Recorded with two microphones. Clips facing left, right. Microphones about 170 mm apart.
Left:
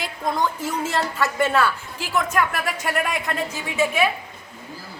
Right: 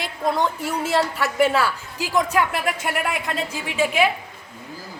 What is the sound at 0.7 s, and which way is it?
A woman's voice, 10° right (ahead or behind).